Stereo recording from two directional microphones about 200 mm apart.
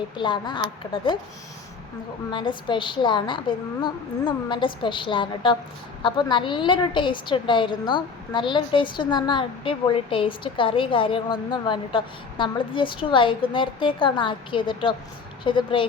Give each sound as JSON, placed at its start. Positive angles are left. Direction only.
{"t": 0.2, "sound": "a woman's voice", "side_deg": 25}
{"t": 2.3, "sound": "a woman's voice", "side_deg": 25}